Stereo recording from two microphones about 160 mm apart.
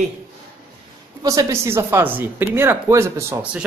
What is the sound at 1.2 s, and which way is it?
Speech, 20° right (ahead or behind).